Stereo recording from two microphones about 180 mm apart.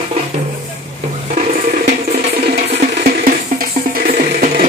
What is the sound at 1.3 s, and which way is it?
Music, 40° right (ahead or behind).